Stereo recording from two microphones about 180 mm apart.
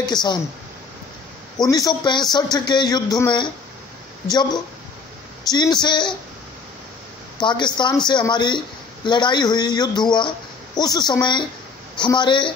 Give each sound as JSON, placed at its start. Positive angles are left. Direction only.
{"t": 0.0, "sound": "speech", "side_deg": 25}
{"t": 1.6, "sound": "speech", "side_deg": 20}
{"t": 5.5, "sound": "speech", "side_deg": 20}
{"t": 7.3, "sound": "speech", "side_deg": 25}